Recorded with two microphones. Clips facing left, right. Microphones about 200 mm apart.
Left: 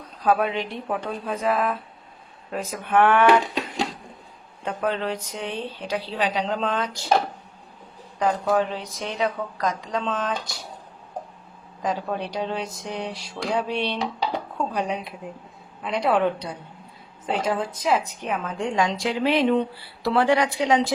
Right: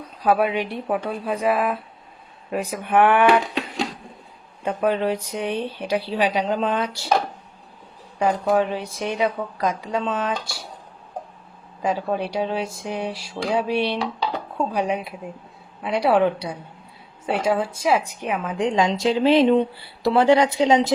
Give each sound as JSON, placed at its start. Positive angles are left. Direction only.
{"t": 0.2, "sound": "speech", "side_deg": -10}
{"t": 4.6, "sound": "speech", "side_deg": -10}
{"t": 8.2, "sound": "speech", "side_deg": -10}
{"t": 11.8, "sound": "a woman's voice", "side_deg": -10}